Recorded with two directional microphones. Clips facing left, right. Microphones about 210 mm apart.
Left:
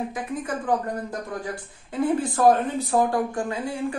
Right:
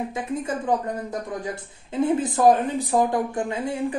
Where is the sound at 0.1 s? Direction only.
25° right (ahead or behind).